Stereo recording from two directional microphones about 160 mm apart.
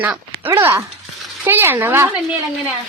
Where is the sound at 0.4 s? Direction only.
15° right (ahead or behind).